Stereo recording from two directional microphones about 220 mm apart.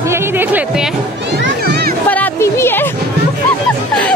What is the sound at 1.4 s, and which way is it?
Music, 50° right (ahead or behind).